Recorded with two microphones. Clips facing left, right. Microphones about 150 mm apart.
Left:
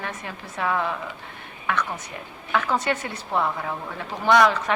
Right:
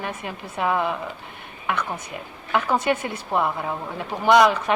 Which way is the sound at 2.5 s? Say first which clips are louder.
Right 2 dB; 15° right (ahead or behind).